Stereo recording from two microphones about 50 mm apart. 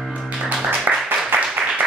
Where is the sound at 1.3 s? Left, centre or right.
Right.